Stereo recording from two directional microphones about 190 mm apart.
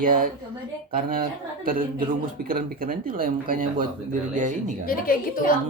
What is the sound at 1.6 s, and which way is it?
Speech, 45° right (ahead or behind).